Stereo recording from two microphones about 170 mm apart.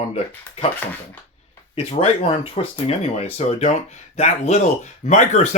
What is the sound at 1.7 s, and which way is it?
Speech, 35° left (ahead or behind).